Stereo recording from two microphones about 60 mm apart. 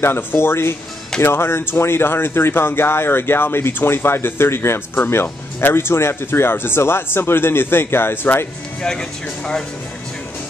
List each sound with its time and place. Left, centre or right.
0.0 s speech: left